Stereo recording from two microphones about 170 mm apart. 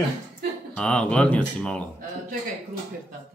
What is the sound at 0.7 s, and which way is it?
Speech, 5° left (ahead or behind).